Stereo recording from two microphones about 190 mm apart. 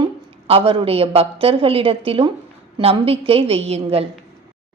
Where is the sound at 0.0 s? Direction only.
30° right (ahead or behind).